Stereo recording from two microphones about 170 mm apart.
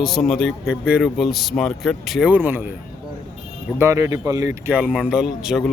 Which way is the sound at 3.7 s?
15° right (ahead or behind).